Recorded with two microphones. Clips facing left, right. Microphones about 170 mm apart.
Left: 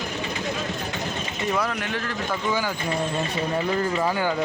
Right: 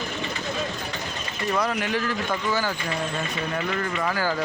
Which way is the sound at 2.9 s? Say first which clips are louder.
Left 3 dB; 25° left (ahead or behind).